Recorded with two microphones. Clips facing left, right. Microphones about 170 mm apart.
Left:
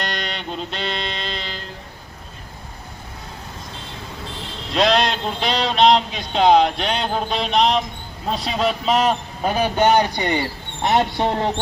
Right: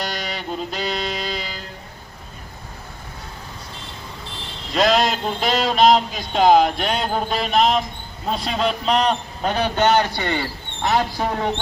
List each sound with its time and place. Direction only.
0.0 s music: 5° right (ahead or behind)
4.7 s a sound: centre (ahead or behind)
8.3 s a man's voice: centre (ahead or behind)
11.2 s speech: 30° left (ahead or behind)